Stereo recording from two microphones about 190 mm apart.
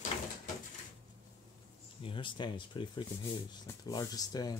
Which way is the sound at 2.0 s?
25° left (ahead or behind).